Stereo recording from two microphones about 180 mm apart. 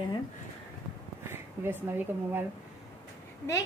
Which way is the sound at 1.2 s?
15° right (ahead or behind).